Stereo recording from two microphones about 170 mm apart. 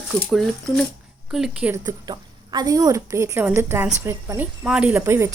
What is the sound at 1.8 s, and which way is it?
A woman's voice, 25° right (ahead or behind).